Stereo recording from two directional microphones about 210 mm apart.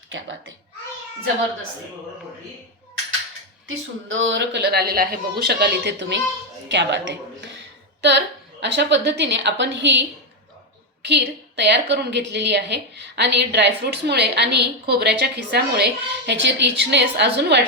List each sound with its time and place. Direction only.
0.1 s a child's voice: 65° right (ahead or behind)
3.7 s a woman's voice: 65° right (ahead or behind)
8.6 s a woman's voice: 55° right (ahead or behind)